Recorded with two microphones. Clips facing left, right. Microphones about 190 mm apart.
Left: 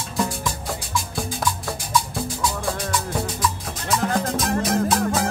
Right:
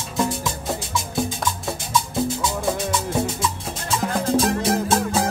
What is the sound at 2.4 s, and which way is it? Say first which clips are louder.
Music: right 2 dB; 20° right (ahead or behind).